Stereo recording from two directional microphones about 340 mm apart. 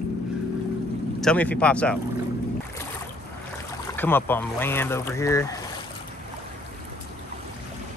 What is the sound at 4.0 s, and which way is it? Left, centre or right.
Speech, centre.